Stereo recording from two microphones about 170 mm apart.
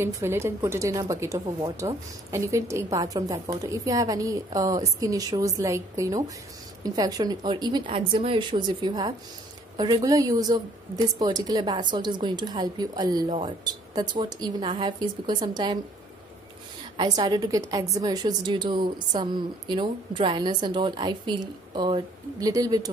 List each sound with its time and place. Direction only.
0.0 s a woman's voice: 15° right (ahead or behind)
16.9 s a woman's voice: 30° right (ahead or behind)